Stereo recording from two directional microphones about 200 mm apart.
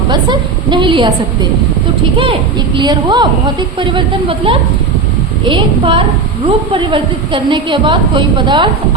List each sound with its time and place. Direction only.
0.1 s a woman's voice: 20° right (ahead or behind)
2.7 s a woman's voice: 20° right (ahead or behind)